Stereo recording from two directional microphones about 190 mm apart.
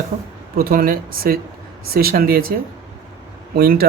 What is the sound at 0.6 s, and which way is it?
A man's voice, 50° right (ahead or behind).